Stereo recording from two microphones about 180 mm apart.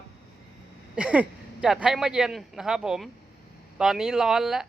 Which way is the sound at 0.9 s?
5° right (ahead or behind).